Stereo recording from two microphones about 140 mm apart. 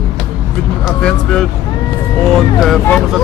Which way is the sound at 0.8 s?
5° left (ahead or behind).